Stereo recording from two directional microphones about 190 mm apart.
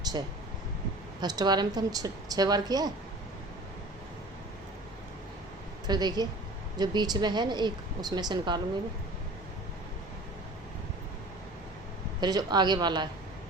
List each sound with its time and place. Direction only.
1.2 s a woman's voice: 20° right (ahead or behind)
5.9 s a woman's voice: 20° right (ahead or behind)
12.2 s a woman's voice: 20° right (ahead or behind)